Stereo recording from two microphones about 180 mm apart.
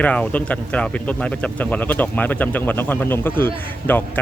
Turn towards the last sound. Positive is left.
turn(degrees=10)  # may be behind; listen again after turning